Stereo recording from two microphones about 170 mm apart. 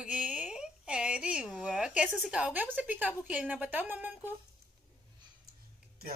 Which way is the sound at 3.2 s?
10° right (ahead or behind).